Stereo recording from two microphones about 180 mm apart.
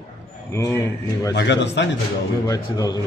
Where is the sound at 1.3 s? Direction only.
75° left (ahead or behind).